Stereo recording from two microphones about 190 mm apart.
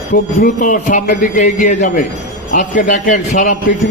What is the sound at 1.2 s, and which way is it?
Speech, 40° left (ahead or behind).